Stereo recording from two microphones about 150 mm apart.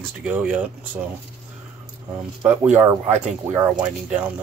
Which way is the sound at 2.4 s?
10° right (ahead or behind).